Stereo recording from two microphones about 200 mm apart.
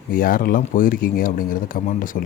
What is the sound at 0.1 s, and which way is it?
Speech, 45° left (ahead or behind).